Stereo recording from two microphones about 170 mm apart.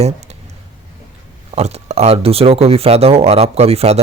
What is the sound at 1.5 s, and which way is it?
Speech, 40° right (ahead or behind).